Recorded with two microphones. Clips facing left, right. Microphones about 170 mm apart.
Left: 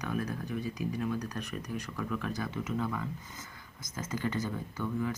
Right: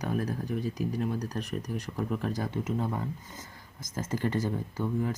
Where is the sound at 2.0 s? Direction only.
25° right (ahead or behind).